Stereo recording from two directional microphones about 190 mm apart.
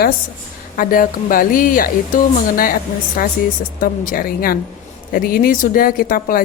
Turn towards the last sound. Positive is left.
turn(degrees=50)  # may be behind; listen again after turning